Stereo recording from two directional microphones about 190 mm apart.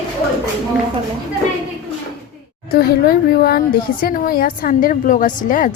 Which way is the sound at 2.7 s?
50° left (ahead or behind).